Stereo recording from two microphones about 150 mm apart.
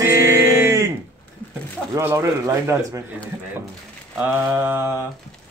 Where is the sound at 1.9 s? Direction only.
20° right (ahead or behind).